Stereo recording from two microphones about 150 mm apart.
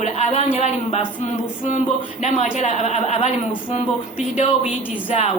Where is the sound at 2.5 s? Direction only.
50° left (ahead or behind).